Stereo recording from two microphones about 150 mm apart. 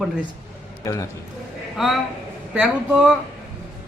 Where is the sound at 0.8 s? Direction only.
20° left (ahead or behind).